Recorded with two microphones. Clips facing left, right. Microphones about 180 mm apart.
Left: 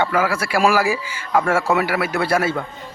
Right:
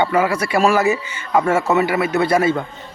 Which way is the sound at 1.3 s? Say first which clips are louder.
Right 2 dB; 5° right (ahead or behind).